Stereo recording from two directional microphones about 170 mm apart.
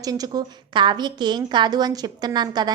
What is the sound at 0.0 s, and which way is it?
A woman's voice, 20° right (ahead or behind).